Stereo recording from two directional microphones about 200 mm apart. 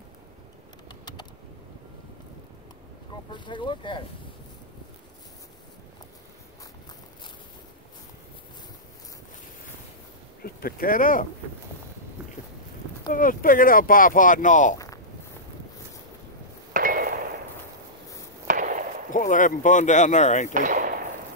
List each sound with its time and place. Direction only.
3.3 s speech: 25° left (ahead or behind)
10.4 s speech: 45° left (ahead or behind)
13.1 s speech: 45° left (ahead or behind)
16.7 s a sound: 45° right (ahead or behind)
18.5 s a sound: 40° right (ahead or behind)
19.1 s speech: 40° left (ahead or behind)
20.5 s speech: 40° right (ahead or behind)